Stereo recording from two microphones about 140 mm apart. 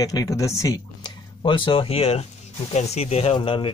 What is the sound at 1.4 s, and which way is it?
Speech, 35° left (ahead or behind).